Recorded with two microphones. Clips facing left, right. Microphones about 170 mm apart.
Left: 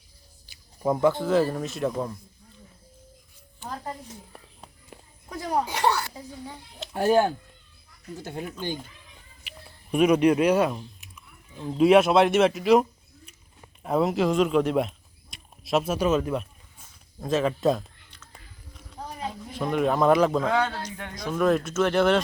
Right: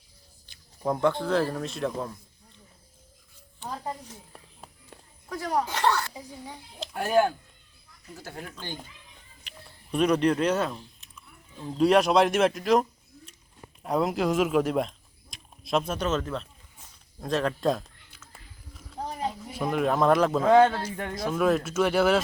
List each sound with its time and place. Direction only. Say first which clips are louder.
0.4 s speech: left 3 dB; 5° left (ahead or behind)
4.3 s a sound: left 1 dB; centre (ahead or behind)
5.3 s speech: left 1 dB; 20° left (ahead or behind)
6.9 s speech: left 2 dB; 30° left (ahead or behind); by 8.8 s 10° left (ahead or behind)
9.9 s speech: left 4 dB; 10° left (ahead or behind)
17.2 s a sound: left 3 dB; centre (ahead or behind)
19.4 s speech: left 3 dB; 5° right (ahead or behind)
20.5 s a man's voice: right 7 dB; 50° right (ahead or behind)
21.2 s speech: left 2 dB; 5° right (ahead or behind)